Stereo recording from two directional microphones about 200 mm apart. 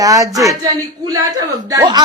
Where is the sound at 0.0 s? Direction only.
15° right (ahead or behind).